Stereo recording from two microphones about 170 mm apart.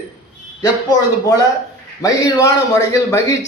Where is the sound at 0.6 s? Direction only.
20° left (ahead or behind).